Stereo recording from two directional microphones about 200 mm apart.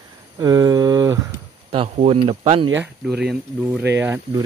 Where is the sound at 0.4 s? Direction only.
20° right (ahead or behind).